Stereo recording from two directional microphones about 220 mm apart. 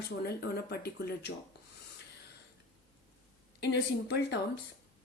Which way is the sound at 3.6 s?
50° left (ahead or behind).